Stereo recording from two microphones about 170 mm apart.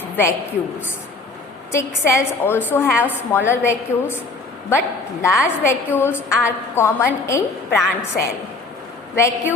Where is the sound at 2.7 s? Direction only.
10° left (ahead or behind).